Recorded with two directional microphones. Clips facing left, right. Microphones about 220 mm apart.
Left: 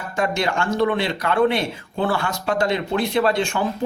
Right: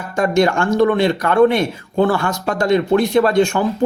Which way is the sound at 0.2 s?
45° right (ahead or behind).